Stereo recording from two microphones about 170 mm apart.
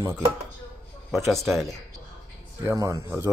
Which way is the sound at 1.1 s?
Centre (ahead or behind).